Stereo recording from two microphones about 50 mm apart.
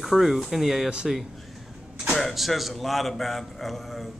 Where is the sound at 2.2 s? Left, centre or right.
Centre.